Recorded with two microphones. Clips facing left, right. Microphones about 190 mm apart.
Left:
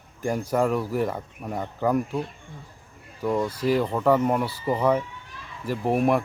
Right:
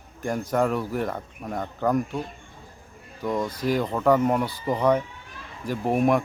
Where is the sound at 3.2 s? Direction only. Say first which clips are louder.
Left 2 dB; 10° left (ahead or behind).